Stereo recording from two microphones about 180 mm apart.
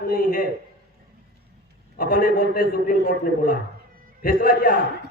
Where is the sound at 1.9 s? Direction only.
50° left (ahead or behind).